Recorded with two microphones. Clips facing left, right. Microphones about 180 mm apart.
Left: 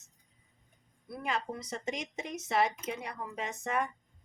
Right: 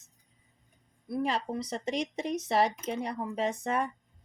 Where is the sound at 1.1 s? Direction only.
35° right (ahead or behind).